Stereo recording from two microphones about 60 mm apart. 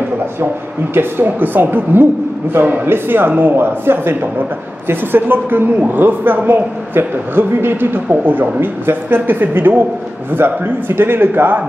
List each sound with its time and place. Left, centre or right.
0.9 s a woman's voice: right